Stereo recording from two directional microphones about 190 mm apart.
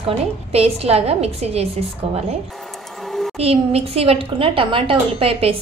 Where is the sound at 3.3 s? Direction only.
30° right (ahead or behind).